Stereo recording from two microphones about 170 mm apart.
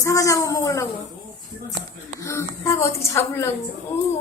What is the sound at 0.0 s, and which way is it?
Speech, 20° left (ahead or behind).